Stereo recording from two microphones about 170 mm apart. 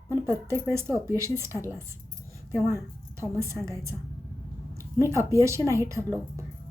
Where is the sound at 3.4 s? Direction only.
15° right (ahead or behind).